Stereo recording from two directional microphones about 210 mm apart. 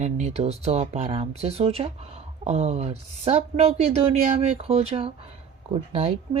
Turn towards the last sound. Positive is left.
turn(degrees=-30)  # may be behind; listen again after turning